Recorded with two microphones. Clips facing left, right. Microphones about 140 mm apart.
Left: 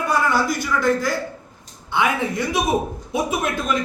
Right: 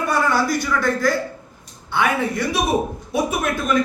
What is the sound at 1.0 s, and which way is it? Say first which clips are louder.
Speech: right 4 dB; 15° left (ahead or behind).